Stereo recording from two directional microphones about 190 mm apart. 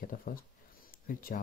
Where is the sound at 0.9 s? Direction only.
50° left (ahead or behind).